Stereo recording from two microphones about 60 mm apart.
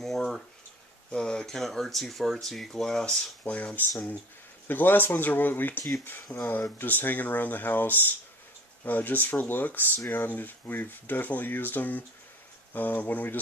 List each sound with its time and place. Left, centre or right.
0.0 s a sound: centre
1.1 s speech: centre
3.4 s speech: left
4.6 s speech: left
6.3 s speech: left
6.8 s speech: left